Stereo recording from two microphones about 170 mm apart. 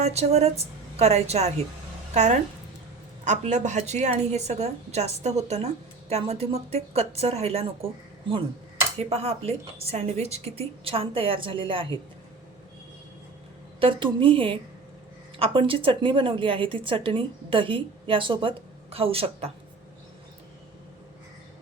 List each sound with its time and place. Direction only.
0.0 s a woman's voice: 40° right (ahead or behind)
9.0 s a woman's voice: 35° right (ahead or behind)
13.7 s a woman's voice: 30° right (ahead or behind)